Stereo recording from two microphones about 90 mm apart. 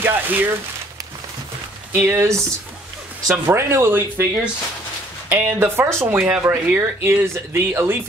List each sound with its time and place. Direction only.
0.0 s speech: 20° right (ahead or behind)
1.9 s speech: 25° right (ahead or behind)
5.3 s speech: 25° right (ahead or behind)